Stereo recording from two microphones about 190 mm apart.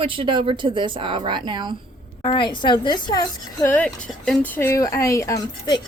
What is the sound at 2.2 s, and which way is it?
A woman's voice, 25° left (ahead or behind).